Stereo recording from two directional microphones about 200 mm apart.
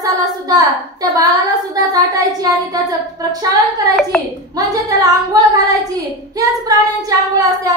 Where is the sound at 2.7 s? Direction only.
20° right (ahead or behind).